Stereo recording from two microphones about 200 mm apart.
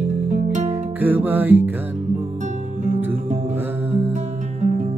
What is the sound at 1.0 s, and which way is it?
Music, 10° right (ahead or behind).